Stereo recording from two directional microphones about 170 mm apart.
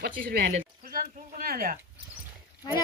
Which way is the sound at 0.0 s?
65° right (ahead or behind).